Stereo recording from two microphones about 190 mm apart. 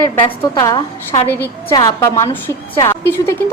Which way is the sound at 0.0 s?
20° left (ahead or behind).